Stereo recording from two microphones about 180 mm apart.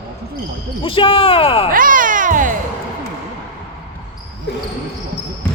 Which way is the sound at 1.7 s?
50° right (ahead or behind).